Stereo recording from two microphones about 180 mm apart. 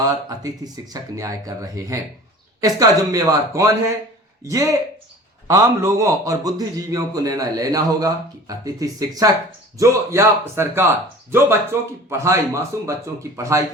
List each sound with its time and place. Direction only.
0.0 s a man's voice: 20° right (ahead or behind)